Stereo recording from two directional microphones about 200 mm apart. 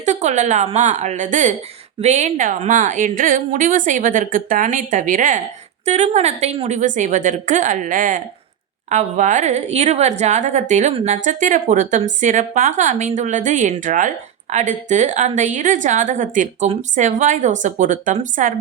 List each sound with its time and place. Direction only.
0.0 s a woman's voice: 35° right (ahead or behind)